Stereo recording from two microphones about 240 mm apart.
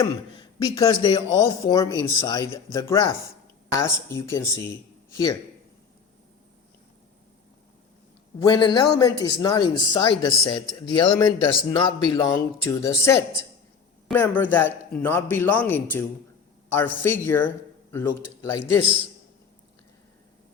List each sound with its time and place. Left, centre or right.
0.6 s a man's voice: centre
8.4 s a man's voice: centre